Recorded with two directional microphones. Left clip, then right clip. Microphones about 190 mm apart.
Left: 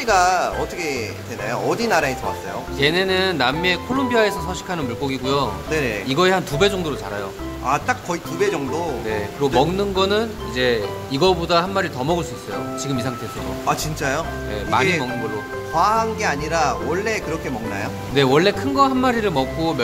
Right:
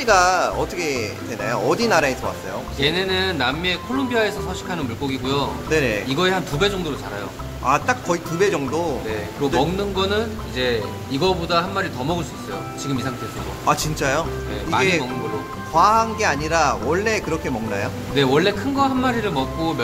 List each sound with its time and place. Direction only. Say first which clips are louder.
0.0 s speech: right 1 dB; 10° right (ahead or behind)
2.8 s speech: left 2 dB; 50° left (ahead or behind)
5.7 s speech: right 2 dB; 10° right (ahead or behind)
6.0 s speech: left 3 dB; 45° left (ahead or behind)
7.6 s speech: right 2 dB; 10° right (ahead or behind)
9.4 s speech: left 2 dB; 45° left (ahead or behind)
13.7 s speech: right 2 dB; 15° right (ahead or behind)
14.7 s speech: left 1 dB; 40° left (ahead or behind)
15.7 s speech: right 2 dB; 15° right (ahead or behind)
18.1 s speech: left 2 dB; 40° left (ahead or behind)